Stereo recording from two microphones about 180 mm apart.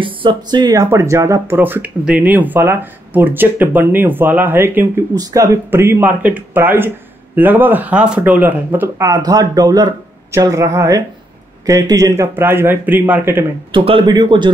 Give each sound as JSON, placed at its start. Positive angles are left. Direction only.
{"t": 0.0, "sound": "speech", "side_deg": -30}
{"t": 13.7, "sound": "a man's voice", "side_deg": -30}